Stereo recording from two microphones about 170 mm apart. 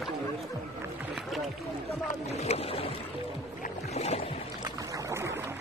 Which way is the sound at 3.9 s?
40° left (ahead or behind).